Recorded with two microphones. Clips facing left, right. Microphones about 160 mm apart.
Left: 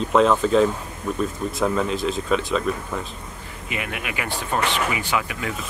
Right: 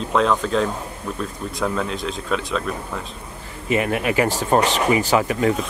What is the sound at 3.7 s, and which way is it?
Speech, 35° right (ahead or behind).